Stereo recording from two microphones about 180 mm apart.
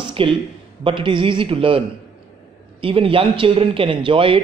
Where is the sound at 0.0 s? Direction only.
30° right (ahead or behind).